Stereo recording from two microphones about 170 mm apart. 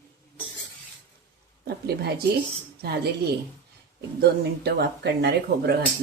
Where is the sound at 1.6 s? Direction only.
70° right (ahead or behind).